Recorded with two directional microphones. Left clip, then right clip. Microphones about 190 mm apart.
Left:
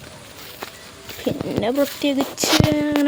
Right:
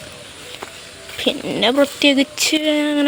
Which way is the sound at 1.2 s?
Centre (ahead or behind).